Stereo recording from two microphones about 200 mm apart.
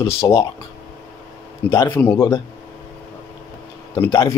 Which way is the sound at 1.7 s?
10° left (ahead or behind).